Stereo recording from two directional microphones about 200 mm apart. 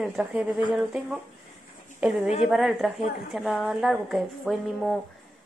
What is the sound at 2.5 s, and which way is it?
A woman's voice, centre (ahead or behind).